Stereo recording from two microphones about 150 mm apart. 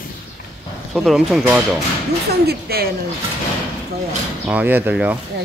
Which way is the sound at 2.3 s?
90° right.